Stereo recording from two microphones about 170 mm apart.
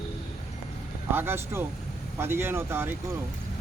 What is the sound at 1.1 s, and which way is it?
Speech, 15° right (ahead or behind).